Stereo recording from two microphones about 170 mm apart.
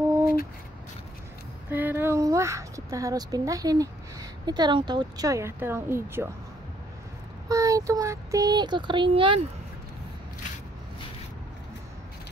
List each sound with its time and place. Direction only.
1.7 s speech: 10° right (ahead or behind)
7.4 s speech: 20° right (ahead or behind)